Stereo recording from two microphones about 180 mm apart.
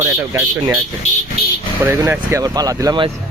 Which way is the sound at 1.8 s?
15° right (ahead or behind).